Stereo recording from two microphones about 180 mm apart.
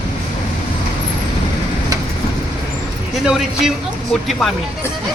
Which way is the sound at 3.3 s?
Centre (ahead or behind).